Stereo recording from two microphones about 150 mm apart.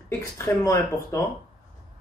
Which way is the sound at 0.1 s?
20° left (ahead or behind).